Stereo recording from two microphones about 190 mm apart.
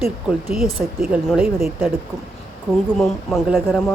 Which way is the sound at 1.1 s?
5° right (ahead or behind).